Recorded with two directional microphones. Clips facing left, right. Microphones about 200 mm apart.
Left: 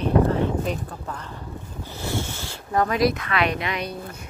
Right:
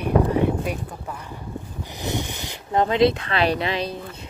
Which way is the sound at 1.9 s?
20° right (ahead or behind).